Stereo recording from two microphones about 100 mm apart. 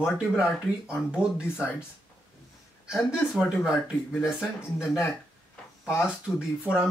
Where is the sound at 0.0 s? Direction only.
10° right (ahead or behind).